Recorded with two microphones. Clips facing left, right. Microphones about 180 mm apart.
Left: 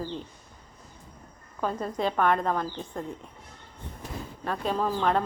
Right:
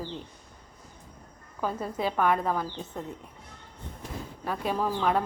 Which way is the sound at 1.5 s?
5° right (ahead or behind).